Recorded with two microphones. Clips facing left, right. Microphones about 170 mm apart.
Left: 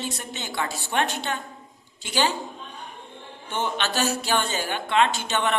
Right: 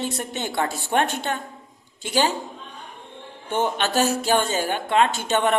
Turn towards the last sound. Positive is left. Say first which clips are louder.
# right 4 dB
turn(degrees=-45)  # may be behind; listen again after turning